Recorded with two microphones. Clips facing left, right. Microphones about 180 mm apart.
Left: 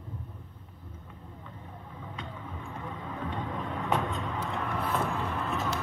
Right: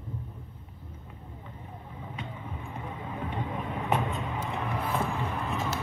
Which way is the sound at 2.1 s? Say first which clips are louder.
Right 1 dB; 15° right (ahead or behind).